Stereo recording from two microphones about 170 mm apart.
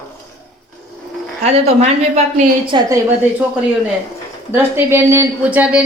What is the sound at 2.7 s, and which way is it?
Speech, 25° right (ahead or behind).